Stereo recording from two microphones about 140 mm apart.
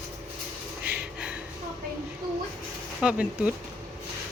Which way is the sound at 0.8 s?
10° right (ahead or behind).